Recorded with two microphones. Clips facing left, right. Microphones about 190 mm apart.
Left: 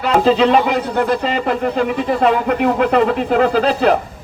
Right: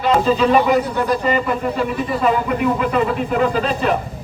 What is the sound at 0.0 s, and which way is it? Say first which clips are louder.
A man's voice: left 2 dB; 80° left.